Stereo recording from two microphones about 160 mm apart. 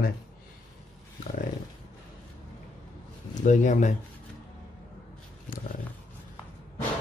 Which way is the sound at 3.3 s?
50° left (ahead or behind).